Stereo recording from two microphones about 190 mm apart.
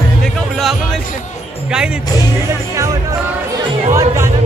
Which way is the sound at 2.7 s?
15° right (ahead or behind).